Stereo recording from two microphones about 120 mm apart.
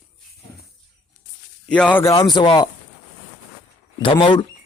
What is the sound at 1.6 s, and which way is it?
Speech, 10° left (ahead or behind).